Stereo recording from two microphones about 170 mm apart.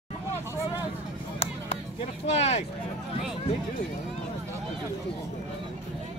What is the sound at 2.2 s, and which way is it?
Speech, 40° left (ahead or behind).